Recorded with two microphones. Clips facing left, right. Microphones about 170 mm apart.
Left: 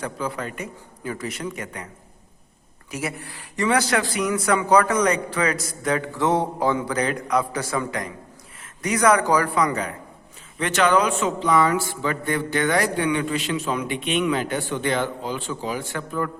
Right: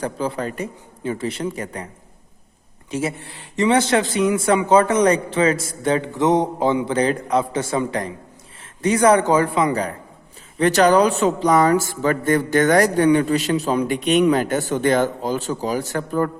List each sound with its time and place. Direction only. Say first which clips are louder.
0.0 s speech: right 5 dB; 30° right (ahead or behind)
2.9 s speech: right 5 dB; 25° right (ahead or behind)